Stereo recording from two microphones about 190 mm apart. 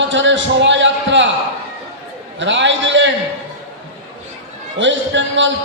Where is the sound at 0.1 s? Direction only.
75° right (ahead or behind).